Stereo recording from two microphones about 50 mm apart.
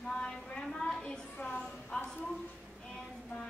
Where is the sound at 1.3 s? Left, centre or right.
Left.